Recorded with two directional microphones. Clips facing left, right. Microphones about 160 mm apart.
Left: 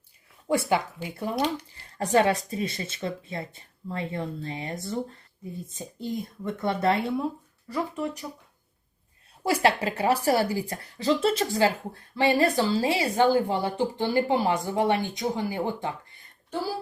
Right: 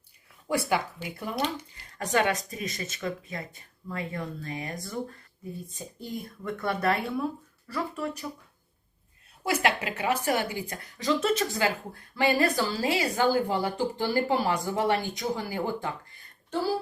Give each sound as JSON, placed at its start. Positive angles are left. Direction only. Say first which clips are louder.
{"t": 0.4, "sound": "a woman's voice", "louder": "left 3 dB", "side_deg": 25}
{"t": 9.4, "sound": "a woman's voice", "louder": "left 4 dB", "side_deg": 30}